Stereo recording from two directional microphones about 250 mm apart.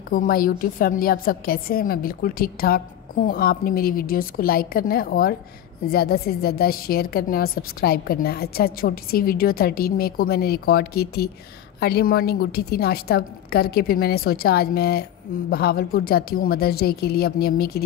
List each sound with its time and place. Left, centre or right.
0.1 s a woman's voice: left